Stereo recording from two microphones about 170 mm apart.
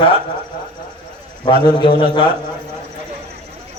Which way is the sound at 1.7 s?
25° left (ahead or behind).